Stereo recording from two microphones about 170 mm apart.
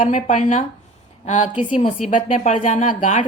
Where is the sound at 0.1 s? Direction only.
45° left (ahead or behind).